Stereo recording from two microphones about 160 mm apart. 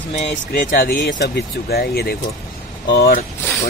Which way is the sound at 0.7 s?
60° left (ahead or behind).